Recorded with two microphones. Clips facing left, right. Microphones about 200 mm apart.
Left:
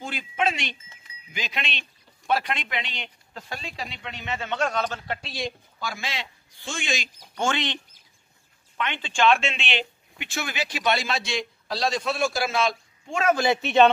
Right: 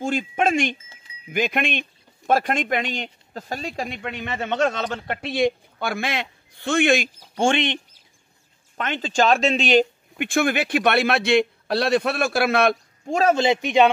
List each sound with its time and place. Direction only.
0.0 s speech: 45° right (ahead or behind)
7.3 s speech: 25° right (ahead or behind)
8.7 s speech: 40° right (ahead or behind); by 12.7 s 60° right (ahead or behind)
13.0 s a man's voice: 40° right (ahead or behind)
13.3 s a man's voice: 20° right (ahead or behind)